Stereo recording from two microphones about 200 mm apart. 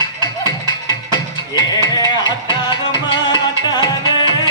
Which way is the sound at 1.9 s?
20° left (ahead or behind).